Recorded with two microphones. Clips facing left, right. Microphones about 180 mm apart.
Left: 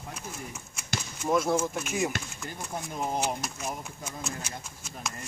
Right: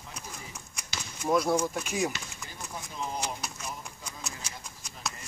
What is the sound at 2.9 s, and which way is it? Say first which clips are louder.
Speech: left 4 dB; 50° left (ahead or behind).